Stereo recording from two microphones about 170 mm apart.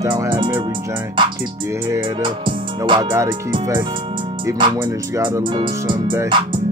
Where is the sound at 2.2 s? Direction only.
30° right (ahead or behind).